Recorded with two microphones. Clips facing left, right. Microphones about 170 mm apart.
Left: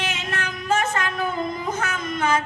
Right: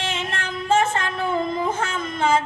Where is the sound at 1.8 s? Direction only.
25° right (ahead or behind).